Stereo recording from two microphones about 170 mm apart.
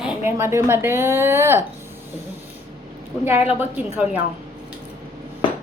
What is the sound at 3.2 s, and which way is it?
Speech, 10° right (ahead or behind).